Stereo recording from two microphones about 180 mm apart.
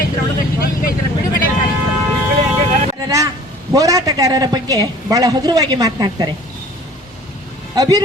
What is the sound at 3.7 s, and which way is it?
A woman's voice, 20° right (ahead or behind).